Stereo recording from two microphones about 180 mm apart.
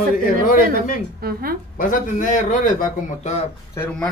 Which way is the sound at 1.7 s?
50° left (ahead or behind).